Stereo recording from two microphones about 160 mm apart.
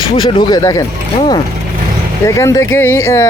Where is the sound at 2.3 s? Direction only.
20° left (ahead or behind).